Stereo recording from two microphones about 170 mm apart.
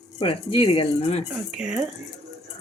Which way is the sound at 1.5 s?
5° right (ahead or behind).